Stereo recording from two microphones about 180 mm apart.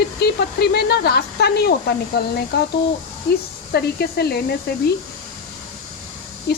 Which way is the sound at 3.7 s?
60° left (ahead or behind).